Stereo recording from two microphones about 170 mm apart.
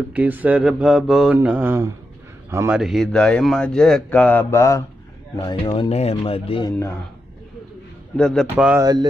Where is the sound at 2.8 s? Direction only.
Centre (ahead or behind); by 6.7 s 30° left (ahead or behind).